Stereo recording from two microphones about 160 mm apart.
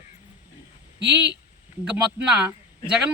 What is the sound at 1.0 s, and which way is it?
Speech, 90° right.